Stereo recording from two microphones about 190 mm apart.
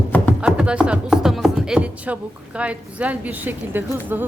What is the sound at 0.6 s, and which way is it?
Music, 5° right (ahead or behind).